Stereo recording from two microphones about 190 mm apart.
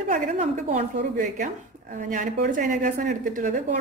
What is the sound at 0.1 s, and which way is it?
A woman's voice, 40° right (ahead or behind).